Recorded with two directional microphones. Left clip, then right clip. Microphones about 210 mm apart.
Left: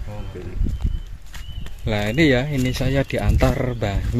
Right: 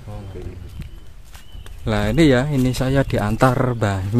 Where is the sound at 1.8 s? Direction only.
25° right (ahead or behind).